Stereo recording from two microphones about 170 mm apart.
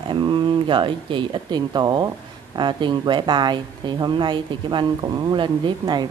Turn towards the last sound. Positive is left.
turn(degrees=-25)  # may be behind; listen again after turning